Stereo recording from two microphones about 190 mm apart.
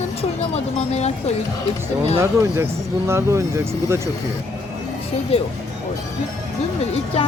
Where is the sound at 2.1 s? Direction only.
15° right (ahead or behind).